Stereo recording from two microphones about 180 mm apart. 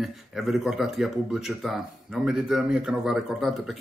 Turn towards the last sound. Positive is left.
turn(degrees=0)  # may be behind; listen again after turning